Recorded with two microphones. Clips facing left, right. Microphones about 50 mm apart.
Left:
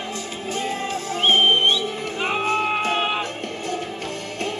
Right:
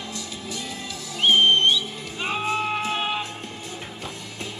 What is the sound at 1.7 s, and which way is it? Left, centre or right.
Music, left.